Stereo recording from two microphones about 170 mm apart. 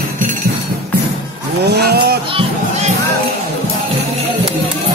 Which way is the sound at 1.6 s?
75° right (ahead or behind).